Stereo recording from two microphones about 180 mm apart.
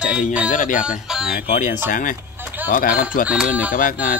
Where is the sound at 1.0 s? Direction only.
5° right (ahead or behind).